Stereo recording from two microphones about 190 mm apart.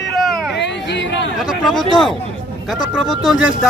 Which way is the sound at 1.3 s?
Centre (ahead or behind).